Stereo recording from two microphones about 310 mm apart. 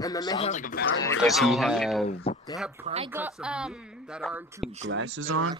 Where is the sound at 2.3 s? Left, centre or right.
Centre.